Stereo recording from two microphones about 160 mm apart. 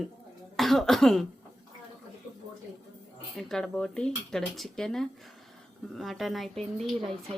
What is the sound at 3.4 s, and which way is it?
Speech, centre (ahead or behind).